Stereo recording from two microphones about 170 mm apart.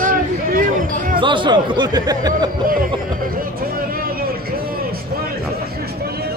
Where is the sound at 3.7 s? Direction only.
60° right (ahead or behind).